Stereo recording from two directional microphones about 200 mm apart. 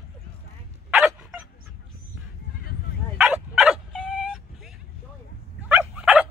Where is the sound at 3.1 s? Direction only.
5° right (ahead or behind).